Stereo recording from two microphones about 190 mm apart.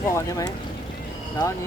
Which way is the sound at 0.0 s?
15° left (ahead or behind).